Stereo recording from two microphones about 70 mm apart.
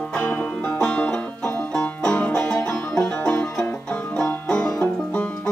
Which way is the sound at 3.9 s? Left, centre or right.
Centre.